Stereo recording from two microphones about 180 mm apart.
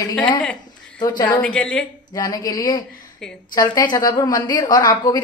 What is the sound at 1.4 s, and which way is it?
Speech, 5° left (ahead or behind).